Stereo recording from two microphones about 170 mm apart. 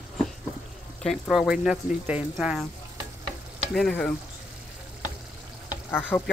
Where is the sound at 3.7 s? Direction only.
5° left (ahead or behind).